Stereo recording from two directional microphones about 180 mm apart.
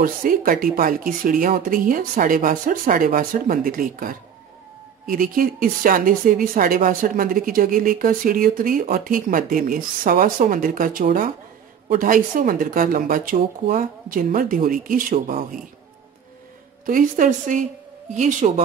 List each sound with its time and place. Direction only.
0.0 s speech: 50° right (ahead or behind)
16.8 s speech: 50° right (ahead or behind)